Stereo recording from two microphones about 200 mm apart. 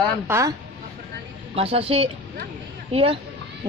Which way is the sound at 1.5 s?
30° right (ahead or behind).